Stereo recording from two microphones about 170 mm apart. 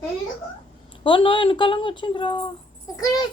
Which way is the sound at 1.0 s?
30° left (ahead or behind).